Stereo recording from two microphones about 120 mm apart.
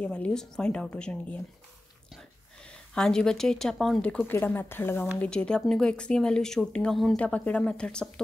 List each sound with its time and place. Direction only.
0.0 s speech: 10° left (ahead or behind)
2.7 s speech: 5° left (ahead or behind)
5.2 s speech: 10° left (ahead or behind)